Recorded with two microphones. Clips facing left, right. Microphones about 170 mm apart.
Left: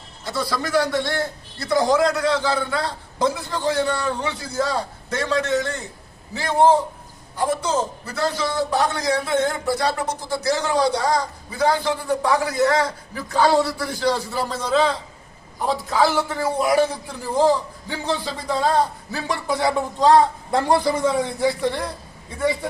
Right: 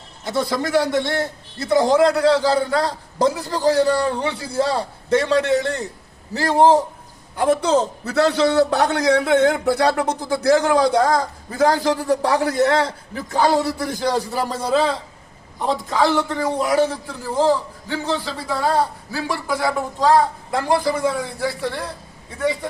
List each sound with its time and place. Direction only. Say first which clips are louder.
0.3 s a man's voice: right 4 dB; 20° right (ahead or behind); by 6.8 s 40° right (ahead or behind)
7.3 s a man's voice: right 5 dB; 65° right (ahead or behind); by 14.8 s 10° right (ahead or behind)
15.6 s a man's voice: right 1 dB; 5° left (ahead or behind)